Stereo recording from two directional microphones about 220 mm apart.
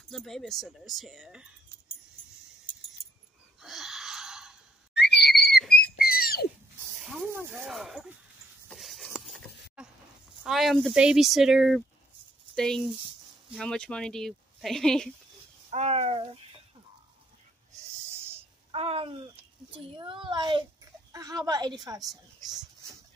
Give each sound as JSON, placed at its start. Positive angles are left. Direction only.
{"t": 0.1, "sound": "a woman's voice", "side_deg": 0}
{"t": 3.6, "sound": "sigh", "side_deg": 0}
{"t": 5.1, "sound": "whistle", "side_deg": 50}
{"t": 5.7, "sound": "rodents", "side_deg": 45}
{"t": 7.0, "sound": "a sound", "side_deg": -5}
{"t": 10.4, "sound": "a woman's voice", "side_deg": 0}
{"t": 15.7, "sound": "speech", "side_deg": -30}
{"t": 18.1, "sound": "a sound", "side_deg": -10}
{"t": 18.7, "sound": "a woman's voice", "side_deg": -25}
{"t": 22.0, "sound": "a woman's voice", "side_deg": 0}